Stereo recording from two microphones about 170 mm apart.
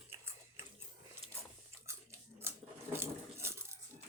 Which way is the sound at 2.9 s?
15° right (ahead or behind).